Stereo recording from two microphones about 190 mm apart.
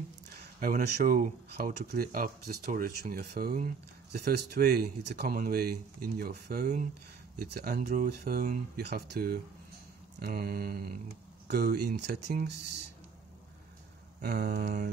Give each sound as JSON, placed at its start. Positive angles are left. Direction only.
{"t": 0.4, "sound": "speech", "side_deg": -45}
{"t": 14.2, "sound": "speech", "side_deg": -55}
{"t": 14.6, "sound": "a sound", "side_deg": -40}